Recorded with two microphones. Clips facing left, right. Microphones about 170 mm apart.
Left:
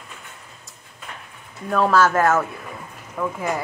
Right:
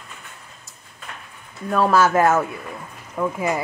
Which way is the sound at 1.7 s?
10° right (ahead or behind).